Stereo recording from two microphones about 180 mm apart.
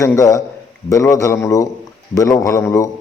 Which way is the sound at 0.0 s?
15° left (ahead or behind).